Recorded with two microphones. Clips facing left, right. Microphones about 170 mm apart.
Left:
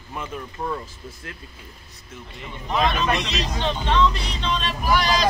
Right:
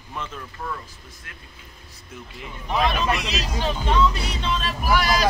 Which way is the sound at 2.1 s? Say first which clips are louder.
Even; centre (ahead or behind).